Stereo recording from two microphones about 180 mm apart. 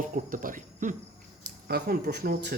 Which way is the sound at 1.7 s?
60° right (ahead or behind).